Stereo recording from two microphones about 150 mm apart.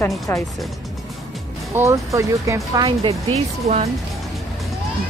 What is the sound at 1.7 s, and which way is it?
Speech, 20° right (ahead or behind).